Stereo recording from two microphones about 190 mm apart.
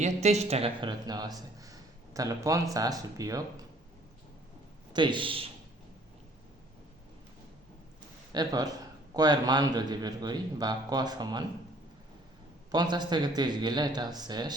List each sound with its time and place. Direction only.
0.0 s speech: 35° right (ahead or behind); by 3.7 s 20° right (ahead or behind)
4.9 s speech: 25° right (ahead or behind)
8.3 s speech: 20° right (ahead or behind)
12.7 s speech: 20° right (ahead or behind)